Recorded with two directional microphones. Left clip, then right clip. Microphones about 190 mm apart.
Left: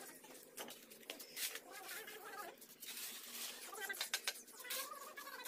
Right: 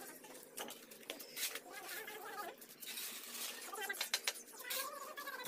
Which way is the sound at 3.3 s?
35° left (ahead or behind).